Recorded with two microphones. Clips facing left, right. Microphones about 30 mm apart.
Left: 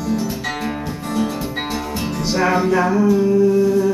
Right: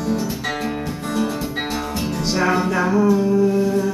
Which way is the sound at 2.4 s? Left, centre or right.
Centre.